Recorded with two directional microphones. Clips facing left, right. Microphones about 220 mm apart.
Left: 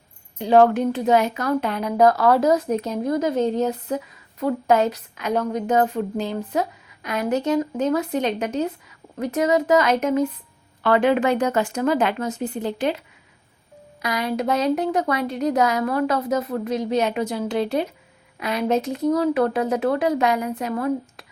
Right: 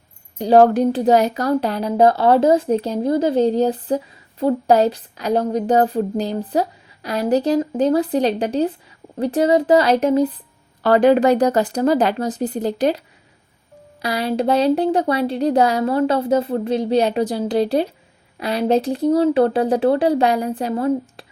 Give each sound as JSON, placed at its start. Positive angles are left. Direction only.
{"t": 0.3, "sound": "speech", "side_deg": -35}
{"t": 14.0, "sound": "speech", "side_deg": -30}